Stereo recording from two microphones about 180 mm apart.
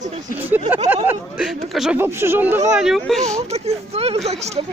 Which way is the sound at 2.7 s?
Centre (ahead or behind).